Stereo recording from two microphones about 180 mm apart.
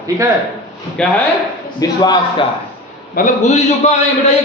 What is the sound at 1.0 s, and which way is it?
Speech, 5° left (ahead or behind).